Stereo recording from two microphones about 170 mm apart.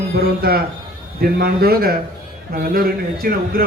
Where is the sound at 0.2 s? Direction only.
65° right (ahead or behind).